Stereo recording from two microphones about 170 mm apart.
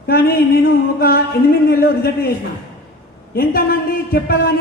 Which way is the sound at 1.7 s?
65° left (ahead or behind).